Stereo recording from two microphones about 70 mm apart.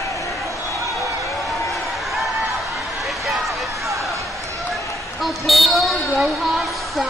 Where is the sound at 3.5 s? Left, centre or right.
Right.